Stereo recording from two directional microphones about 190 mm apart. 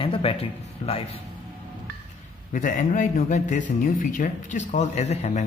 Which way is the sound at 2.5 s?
45° left (ahead or behind).